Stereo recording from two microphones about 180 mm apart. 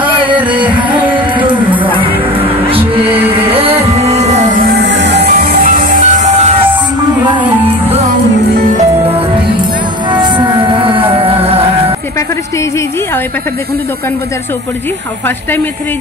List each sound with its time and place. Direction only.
0.4 s music: 25° right (ahead or behind)
1.9 s music: 30° right (ahead or behind)
4.7 s music: 80° right
5.3 s music: 50° right (ahead or behind)
8.7 s music: 30° right (ahead or behind)
10.6 s music: 25° right (ahead or behind)